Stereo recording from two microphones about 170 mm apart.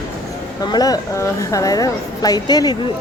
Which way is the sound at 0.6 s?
25° left (ahead or behind).